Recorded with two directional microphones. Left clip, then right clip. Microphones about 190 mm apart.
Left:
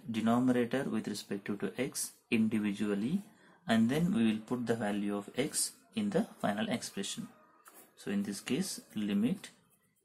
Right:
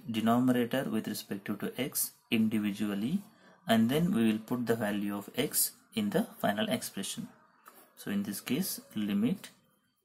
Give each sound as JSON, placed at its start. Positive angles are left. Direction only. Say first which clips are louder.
{"t": 0.1, "sound": "speech", "louder": "right 2 dB", "side_deg": -20}